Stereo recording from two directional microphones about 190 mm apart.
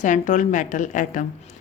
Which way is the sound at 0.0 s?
40° left (ahead or behind).